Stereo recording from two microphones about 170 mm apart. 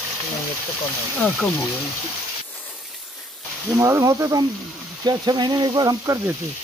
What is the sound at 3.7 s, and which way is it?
Speech, 15° right (ahead or behind).